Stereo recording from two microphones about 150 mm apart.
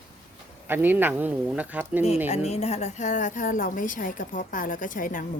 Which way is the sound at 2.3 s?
45° left (ahead or behind).